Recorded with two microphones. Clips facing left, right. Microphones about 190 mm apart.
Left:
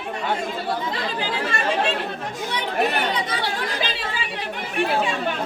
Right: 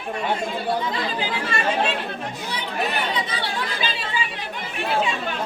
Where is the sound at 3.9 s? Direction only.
60° left (ahead or behind).